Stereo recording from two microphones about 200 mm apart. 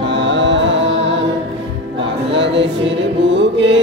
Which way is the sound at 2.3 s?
65° right (ahead or behind).